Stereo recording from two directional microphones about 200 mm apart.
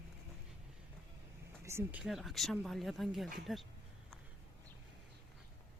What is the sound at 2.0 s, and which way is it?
Speech, centre (ahead or behind).